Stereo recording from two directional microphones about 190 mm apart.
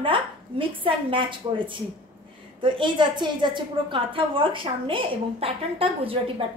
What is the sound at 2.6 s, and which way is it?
A woman's voice, 25° right (ahead or behind).